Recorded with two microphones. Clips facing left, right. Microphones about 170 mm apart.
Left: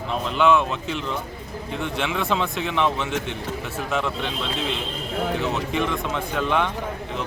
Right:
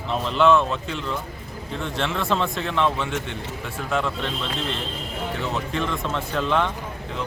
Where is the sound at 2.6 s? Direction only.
15° left (ahead or behind).